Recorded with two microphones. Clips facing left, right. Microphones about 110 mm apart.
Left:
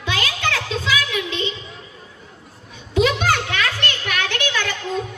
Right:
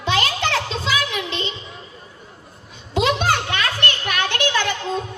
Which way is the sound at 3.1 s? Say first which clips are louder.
Right 1 dB; 25° right (ahead or behind).